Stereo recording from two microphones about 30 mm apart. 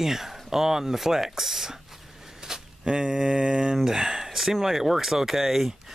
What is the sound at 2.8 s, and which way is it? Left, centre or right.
Mantra, right.